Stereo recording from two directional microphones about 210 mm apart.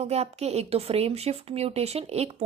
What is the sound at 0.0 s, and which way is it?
A woman's voice, 30° right (ahead or behind).